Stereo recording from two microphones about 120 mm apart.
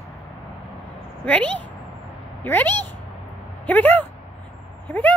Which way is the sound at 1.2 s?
10° left (ahead or behind).